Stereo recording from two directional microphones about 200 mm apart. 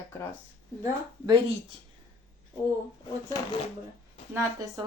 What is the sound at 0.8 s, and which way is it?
Speech, 20° right (ahead or behind).